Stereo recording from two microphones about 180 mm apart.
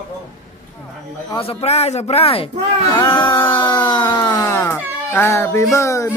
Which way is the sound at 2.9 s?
30° left (ahead or behind).